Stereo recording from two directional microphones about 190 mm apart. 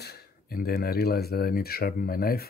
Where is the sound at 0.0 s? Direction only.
55° left (ahead or behind).